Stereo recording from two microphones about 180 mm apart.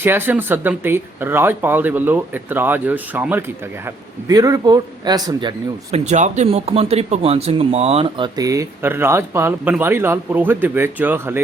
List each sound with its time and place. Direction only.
0.0 s speech: 10° right (ahead or behind)
5.9 s speech: 40° right (ahead or behind)
8.4 s speech: 20° right (ahead or behind)